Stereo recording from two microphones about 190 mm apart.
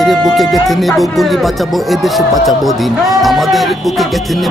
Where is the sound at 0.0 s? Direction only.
Centre (ahead or behind).